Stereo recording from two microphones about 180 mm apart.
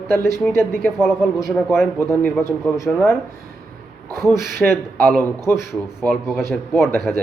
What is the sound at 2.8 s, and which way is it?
Speech, 5° left (ahead or behind).